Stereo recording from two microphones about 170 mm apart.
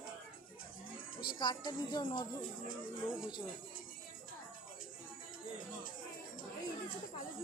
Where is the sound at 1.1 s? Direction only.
60° left (ahead or behind).